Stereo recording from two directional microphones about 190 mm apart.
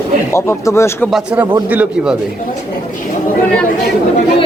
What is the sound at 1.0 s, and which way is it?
Speech, 5° right (ahead or behind).